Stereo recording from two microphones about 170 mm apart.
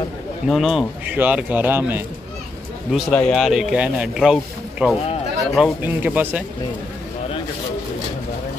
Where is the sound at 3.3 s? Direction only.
Centre (ahead or behind).